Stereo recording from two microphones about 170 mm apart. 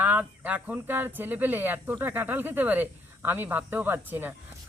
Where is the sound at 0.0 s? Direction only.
10° right (ahead or behind).